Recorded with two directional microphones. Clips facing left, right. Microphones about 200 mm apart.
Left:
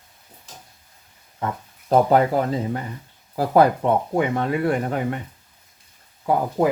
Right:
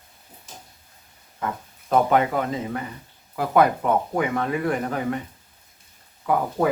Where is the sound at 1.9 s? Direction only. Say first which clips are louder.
Left 3 dB; 35° left (ahead or behind).